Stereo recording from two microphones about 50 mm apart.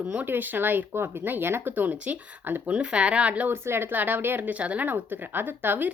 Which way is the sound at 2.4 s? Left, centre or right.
Right.